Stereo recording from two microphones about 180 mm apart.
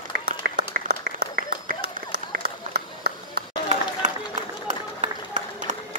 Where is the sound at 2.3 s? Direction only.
65° right (ahead or behind).